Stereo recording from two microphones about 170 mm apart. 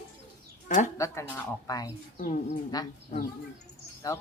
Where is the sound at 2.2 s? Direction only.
50° left (ahead or behind).